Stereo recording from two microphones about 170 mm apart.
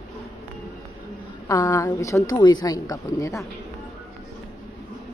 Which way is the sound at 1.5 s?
20° left (ahead or behind).